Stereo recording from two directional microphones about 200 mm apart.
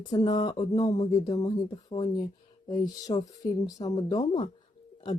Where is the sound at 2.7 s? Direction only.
20° left (ahead or behind).